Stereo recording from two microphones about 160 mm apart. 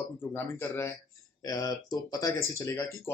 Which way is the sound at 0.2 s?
15° left (ahead or behind).